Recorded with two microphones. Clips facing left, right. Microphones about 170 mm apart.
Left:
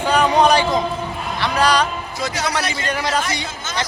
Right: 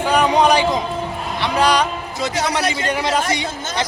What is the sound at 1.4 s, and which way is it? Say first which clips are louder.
A man's voice: right 1 dB; 20° right (ahead or behind).